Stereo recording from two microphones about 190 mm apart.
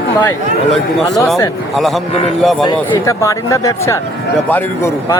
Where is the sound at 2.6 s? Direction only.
20° left (ahead or behind).